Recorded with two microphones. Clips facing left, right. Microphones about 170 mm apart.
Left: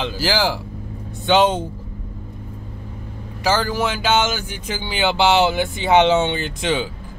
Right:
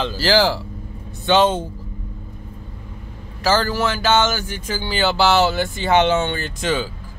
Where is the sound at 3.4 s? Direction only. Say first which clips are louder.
Right 1 dB; 15° left (ahead or behind).